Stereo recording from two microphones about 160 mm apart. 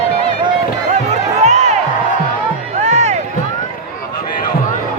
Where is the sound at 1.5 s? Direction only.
45° right (ahead or behind).